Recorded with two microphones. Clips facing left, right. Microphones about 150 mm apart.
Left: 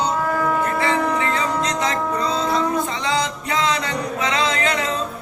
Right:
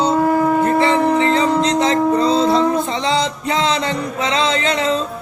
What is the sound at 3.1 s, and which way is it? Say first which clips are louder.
Music: right 4 dB; 30° right (ahead or behind).